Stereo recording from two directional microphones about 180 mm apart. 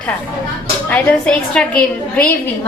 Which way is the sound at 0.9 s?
5° left (ahead or behind).